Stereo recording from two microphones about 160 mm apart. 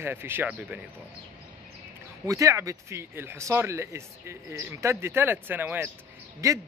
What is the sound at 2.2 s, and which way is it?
Speech, 20° right (ahead or behind).